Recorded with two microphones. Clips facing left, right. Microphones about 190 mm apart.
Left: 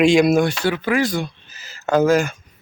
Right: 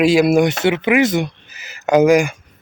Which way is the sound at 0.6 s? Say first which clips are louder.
Right 4 dB; 20° right (ahead or behind).